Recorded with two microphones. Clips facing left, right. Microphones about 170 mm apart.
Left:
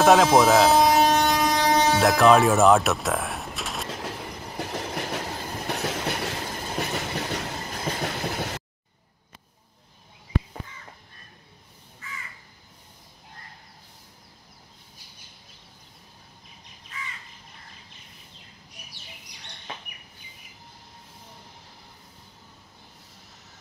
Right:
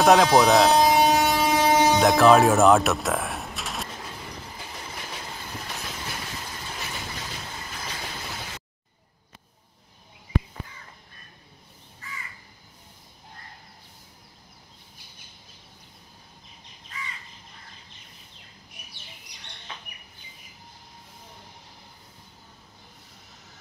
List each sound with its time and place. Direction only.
0.0 s a sound: centre (ahead or behind)
1.7 s music: 10° right (ahead or behind)
2.0 s speech: centre (ahead or behind)
4.6 s train: 70° left (ahead or behind)
6.6 s train: 45° left (ahead or behind)
6.9 s train: 65° left (ahead or behind)
7.5 s train: 40° left (ahead or behind); by 8.5 s 55° left (ahead or behind)